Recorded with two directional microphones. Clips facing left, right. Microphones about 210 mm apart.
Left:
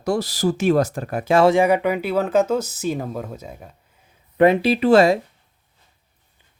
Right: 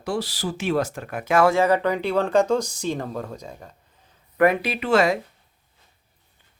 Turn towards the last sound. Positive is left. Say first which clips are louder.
# left 6 dB
turn(degrees=35)  # may be behind; listen again after turning